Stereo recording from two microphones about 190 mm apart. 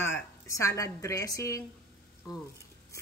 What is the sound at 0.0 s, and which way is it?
A woman's voice, 15° left (ahead or behind).